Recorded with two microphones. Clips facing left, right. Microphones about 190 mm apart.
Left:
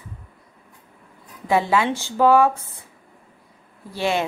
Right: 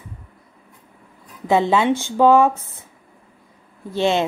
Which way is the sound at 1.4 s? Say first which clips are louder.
Right 3 dB; 20° right (ahead or behind).